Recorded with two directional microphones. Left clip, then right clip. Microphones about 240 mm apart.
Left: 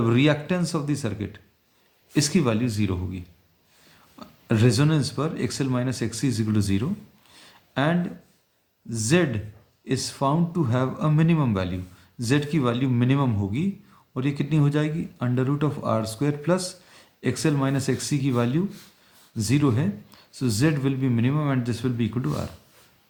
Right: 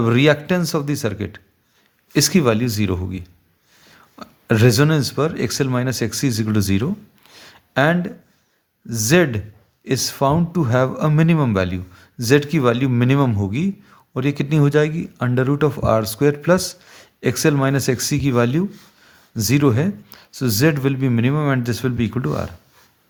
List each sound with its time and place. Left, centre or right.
0.0 s speech: right